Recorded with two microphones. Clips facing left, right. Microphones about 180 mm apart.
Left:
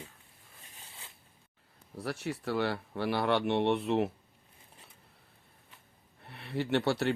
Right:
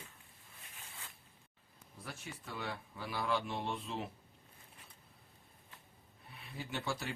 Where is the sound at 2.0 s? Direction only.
75° left (ahead or behind).